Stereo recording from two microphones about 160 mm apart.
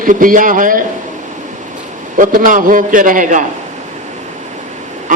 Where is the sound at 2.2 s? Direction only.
55° right (ahead or behind).